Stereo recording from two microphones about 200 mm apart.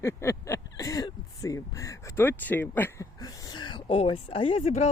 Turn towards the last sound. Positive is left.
turn(degrees=30)  # may be behind; listen again after turning